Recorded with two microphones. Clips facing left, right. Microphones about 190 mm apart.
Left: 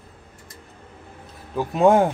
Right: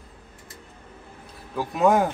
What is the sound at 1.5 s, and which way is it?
Speech, 25° left (ahead or behind).